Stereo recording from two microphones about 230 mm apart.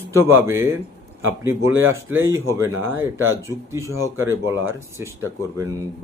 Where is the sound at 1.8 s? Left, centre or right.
Centre.